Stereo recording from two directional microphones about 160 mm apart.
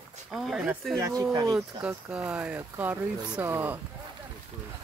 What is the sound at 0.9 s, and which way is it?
Speech, 15° right (ahead or behind).